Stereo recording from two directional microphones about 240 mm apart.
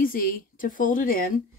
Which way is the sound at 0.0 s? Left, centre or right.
Left.